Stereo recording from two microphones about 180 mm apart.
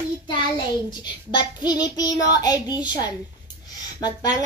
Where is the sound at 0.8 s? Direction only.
25° left (ahead or behind).